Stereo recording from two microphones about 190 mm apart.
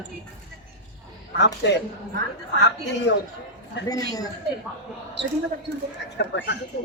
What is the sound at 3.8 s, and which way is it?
Speech, 20° left (ahead or behind).